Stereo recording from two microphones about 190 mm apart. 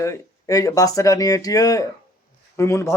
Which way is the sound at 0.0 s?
15° left (ahead or behind).